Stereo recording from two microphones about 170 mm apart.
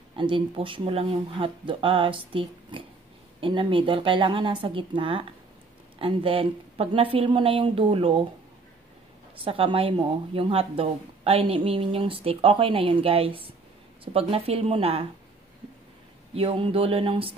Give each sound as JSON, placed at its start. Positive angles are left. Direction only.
{"t": 0.1, "sound": "speech", "side_deg": -30}
{"t": 9.4, "sound": "speech", "side_deg": -30}
{"t": 16.3, "sound": "speech", "side_deg": -30}